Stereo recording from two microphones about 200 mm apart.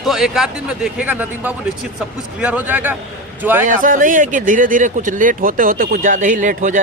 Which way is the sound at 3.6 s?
40° right (ahead or behind).